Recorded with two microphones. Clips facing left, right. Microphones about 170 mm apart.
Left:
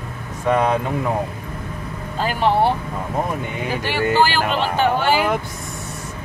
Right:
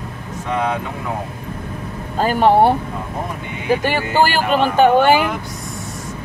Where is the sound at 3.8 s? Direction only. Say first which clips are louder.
Left 3 dB; 50° right (ahead or behind).